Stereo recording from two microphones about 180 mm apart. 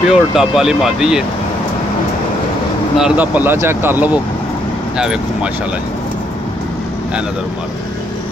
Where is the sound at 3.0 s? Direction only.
10° right (ahead or behind).